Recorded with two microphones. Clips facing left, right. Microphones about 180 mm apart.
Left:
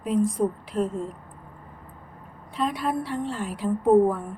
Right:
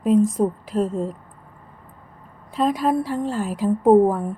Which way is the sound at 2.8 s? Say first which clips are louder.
Right 6 dB; 40° right (ahead or behind).